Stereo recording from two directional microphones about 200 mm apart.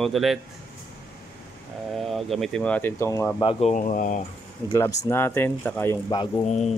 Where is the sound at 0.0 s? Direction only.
Centre (ahead or behind).